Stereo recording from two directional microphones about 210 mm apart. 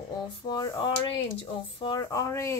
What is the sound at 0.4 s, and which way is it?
A woman's voice, 20° left (ahead or behind).